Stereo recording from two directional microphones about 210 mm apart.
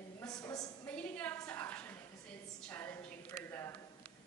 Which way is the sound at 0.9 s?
5° left (ahead or behind).